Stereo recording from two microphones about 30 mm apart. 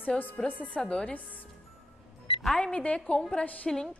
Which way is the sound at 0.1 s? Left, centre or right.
Left.